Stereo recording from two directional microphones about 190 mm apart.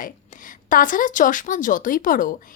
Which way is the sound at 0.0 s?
45° left (ahead or behind).